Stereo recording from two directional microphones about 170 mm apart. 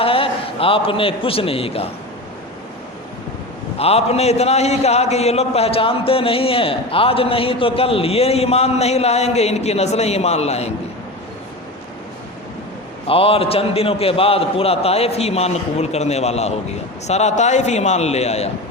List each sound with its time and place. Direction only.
0.0 s a man's voice: 35° left (ahead or behind)
3.8 s a man's voice: 35° left (ahead or behind)
13.1 s a man's voice: 35° left (ahead or behind)